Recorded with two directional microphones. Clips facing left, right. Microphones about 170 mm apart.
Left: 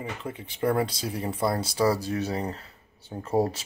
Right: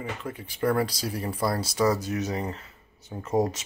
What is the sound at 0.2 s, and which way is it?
Speech, 25° left (ahead or behind).